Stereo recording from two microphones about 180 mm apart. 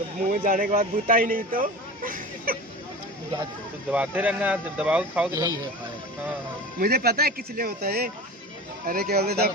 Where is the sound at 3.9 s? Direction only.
10° right (ahead or behind).